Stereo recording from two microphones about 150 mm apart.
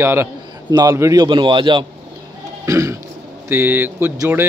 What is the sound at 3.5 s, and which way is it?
Speech, 15° right (ahead or behind).